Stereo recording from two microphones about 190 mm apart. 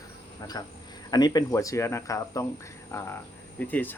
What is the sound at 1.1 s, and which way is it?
Speech, 20° left (ahead or behind).